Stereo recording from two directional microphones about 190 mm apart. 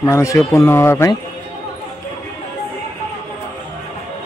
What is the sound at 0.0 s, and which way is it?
Speech, 15° left (ahead or behind).